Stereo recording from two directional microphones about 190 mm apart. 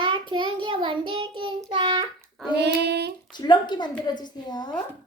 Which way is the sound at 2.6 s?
60° right (ahead or behind).